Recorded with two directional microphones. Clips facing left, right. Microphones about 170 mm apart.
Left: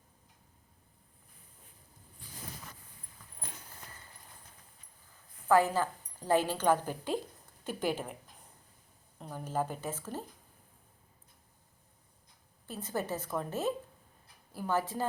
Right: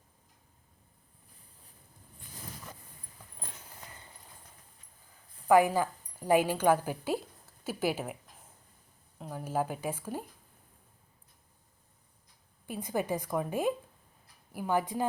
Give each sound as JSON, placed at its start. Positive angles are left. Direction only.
{"t": 5.5, "sound": "a woman's voice", "side_deg": -15}
{"t": 9.1, "sound": "a woman's voice", "side_deg": -5}
{"t": 12.6, "sound": "a woman's voice", "side_deg": -15}